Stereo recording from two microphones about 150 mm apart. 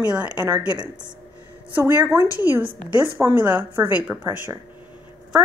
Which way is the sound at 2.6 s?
35° right (ahead or behind).